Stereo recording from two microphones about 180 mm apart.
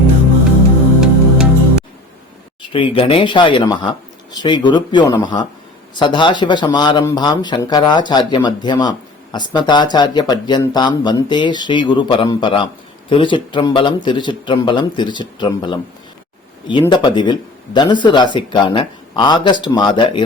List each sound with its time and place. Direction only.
1.0 s music: 5° right (ahead or behind)
2.6 s speech: 30° left (ahead or behind)
16.9 s speech: 25° left (ahead or behind)